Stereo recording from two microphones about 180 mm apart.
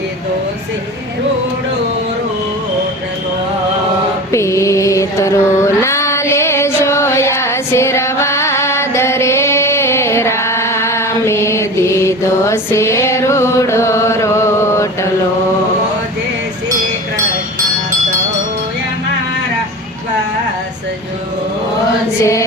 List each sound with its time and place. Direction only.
4.3 s mantra: 15° left (ahead or behind)
22.2 s music: 15° left (ahead or behind)